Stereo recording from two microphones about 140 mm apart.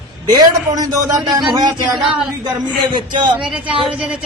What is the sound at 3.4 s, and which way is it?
Speech, 10° right (ahead or behind).